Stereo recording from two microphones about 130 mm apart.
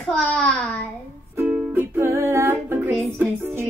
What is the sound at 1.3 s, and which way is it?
Music, 15° right (ahead or behind).